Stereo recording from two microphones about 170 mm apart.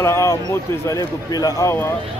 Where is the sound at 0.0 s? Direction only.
15° left (ahead or behind).